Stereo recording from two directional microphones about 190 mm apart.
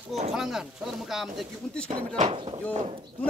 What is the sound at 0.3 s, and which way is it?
Speech, centre (ahead or behind).